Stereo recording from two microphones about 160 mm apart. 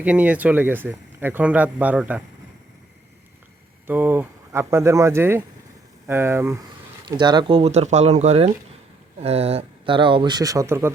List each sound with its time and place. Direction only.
0.0 s speech: 10° right (ahead or behind)
3.8 s speech: 10° right (ahead or behind)
7.1 s speech: 25° right (ahead or behind)